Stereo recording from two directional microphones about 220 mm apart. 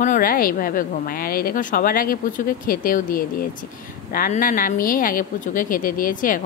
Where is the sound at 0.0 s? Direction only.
40° left (ahead or behind).